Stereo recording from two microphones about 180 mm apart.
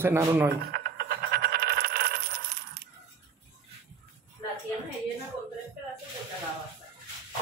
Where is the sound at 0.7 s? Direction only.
60° right (ahead or behind).